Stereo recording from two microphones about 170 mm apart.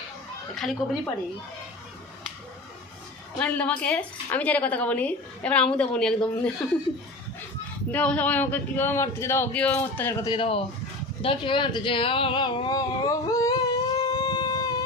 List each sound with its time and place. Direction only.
0.5 s speech: centre (ahead or behind)
3.3 s speech: 10° left (ahead or behind)
7.9 s speech: 10° left (ahead or behind)
10.2 s speech: 30° left (ahead or behind)